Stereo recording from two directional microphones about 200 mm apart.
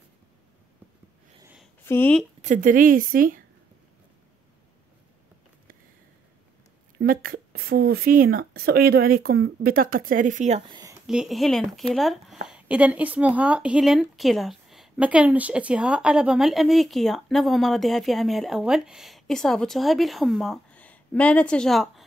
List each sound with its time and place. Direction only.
1.9 s speech: 10° left (ahead or behind)
2.4 s speech: 40° right (ahead or behind)
7.0 s speech: 45° right (ahead or behind)
10.7 s a sound: 20° right (ahead or behind)
11.1 s a woman's voice: centre (ahead or behind)